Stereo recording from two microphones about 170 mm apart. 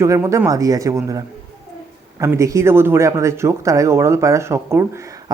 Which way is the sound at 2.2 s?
20° right (ahead or behind).